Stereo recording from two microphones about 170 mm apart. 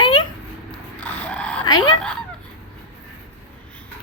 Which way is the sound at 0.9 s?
10° left (ahead or behind).